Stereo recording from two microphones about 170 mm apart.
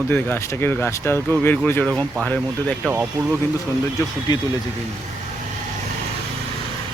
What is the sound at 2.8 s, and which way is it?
Speech, 15° right (ahead or behind).